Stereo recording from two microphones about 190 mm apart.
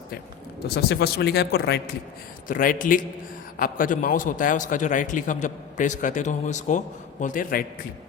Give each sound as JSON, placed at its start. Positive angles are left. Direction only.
{"t": 0.7, "sound": "speech", "side_deg": 60}
{"t": 2.5, "sound": "a man's voice", "side_deg": 45}